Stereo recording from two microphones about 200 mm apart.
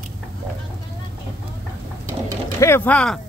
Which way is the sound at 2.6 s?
10° left (ahead or behind).